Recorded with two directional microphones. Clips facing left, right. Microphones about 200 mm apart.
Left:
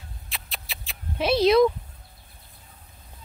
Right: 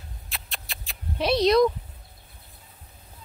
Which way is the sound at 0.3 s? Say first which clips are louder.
Left 1 dB; centre (ahead or behind).